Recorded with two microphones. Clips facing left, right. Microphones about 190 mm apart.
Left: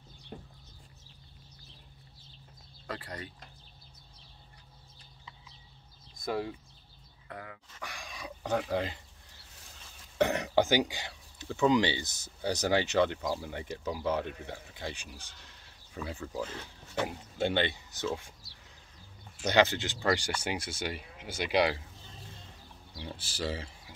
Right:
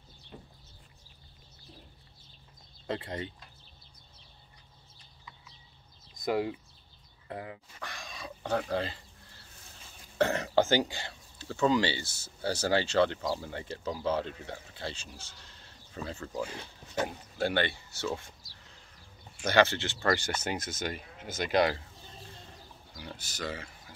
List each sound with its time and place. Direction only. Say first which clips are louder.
0.3 s a sound: left 3 dB; 50° left (ahead or behind)
2.9 s speech: right 5 dB; 25° right (ahead or behind)
6.2 s speech: right 4 dB; 15° right (ahead or behind)
7.2 s speech: right 5 dB; 25° right (ahead or behind)
7.8 s dog: left 1 dB; 10° left (ahead or behind)
10.1 s speech: even; 15° left (ahead or behind)
16.3 s speech: right 3 dB; 10° right (ahead or behind)
17.4 s speech: even; 20° left (ahead or behind)
19.4 s speech: right 1 dB; 15° left (ahead or behind)
22.9 s speech: left 2 dB; 30° left (ahead or behind)